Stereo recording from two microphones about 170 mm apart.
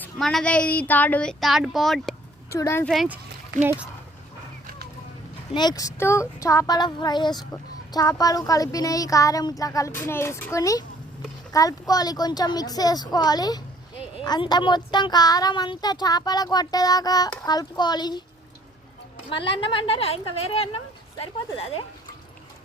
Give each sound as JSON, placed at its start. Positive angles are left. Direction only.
{"t": 0.0, "sound": "speech", "side_deg": 0}
{"t": 2.5, "sound": "speech", "side_deg": 15}
{"t": 2.9, "sound": "speech", "side_deg": 0}
{"t": 3.6, "sound": "speech", "side_deg": -15}
{"t": 5.5, "sound": "speech", "side_deg": 25}
{"t": 19.3, "sound": "a woman's voice", "side_deg": 30}